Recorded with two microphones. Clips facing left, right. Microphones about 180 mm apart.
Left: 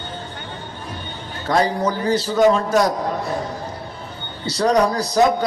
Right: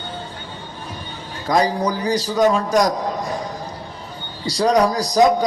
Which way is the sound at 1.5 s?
15° right (ahead or behind).